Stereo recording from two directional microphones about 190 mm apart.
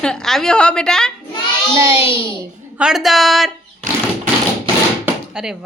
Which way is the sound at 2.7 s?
5° right (ahead or behind).